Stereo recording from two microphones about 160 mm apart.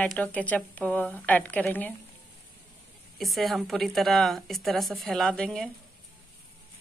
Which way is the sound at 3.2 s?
Centre (ahead or behind).